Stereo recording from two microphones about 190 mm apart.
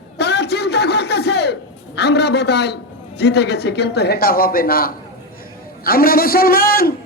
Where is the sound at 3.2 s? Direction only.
60° left (ahead or behind).